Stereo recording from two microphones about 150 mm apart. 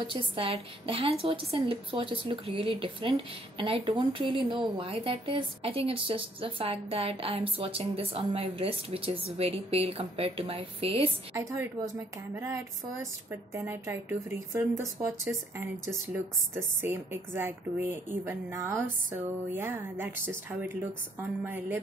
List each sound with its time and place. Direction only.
0.0 s speech: 35° right (ahead or behind)
13.6 s a woman's voice: 20° right (ahead or behind)
16.8 s a woman's voice: 15° right (ahead or behind)